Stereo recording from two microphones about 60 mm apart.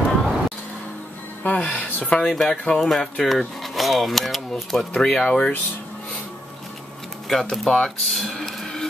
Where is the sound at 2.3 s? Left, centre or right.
Centre.